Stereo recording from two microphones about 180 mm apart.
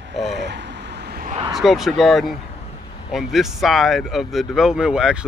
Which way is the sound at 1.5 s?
Centre (ahead or behind).